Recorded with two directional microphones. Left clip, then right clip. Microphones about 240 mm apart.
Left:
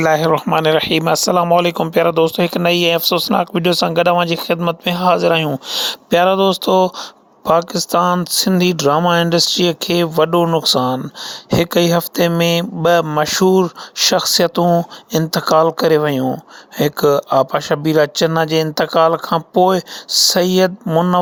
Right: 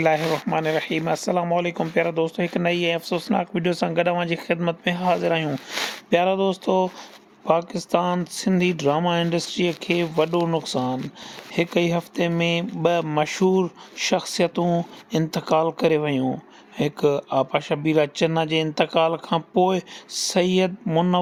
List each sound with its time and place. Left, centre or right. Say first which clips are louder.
0.0 s speech: left 6 dB; left
0.3 s speech: left 9 dB; left